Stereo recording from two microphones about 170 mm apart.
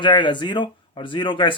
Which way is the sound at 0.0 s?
30° left (ahead or behind).